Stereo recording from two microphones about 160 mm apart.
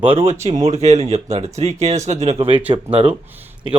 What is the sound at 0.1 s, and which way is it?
Speech, 40° right (ahead or behind).